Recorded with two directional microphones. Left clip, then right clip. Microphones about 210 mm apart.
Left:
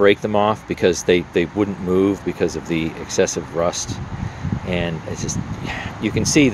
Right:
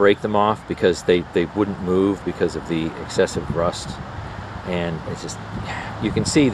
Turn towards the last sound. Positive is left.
turn(degrees=10)  # may be behind; listen again after turning